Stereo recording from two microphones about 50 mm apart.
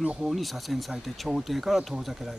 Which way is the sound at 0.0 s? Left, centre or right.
Centre.